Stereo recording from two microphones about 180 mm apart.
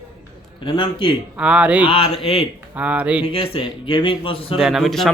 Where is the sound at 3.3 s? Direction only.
30° left (ahead or behind).